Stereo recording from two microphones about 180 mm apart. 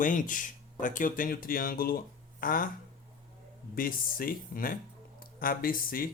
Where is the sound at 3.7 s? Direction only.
50° left (ahead or behind).